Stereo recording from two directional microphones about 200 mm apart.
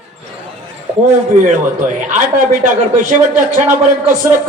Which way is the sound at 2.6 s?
40° right (ahead or behind).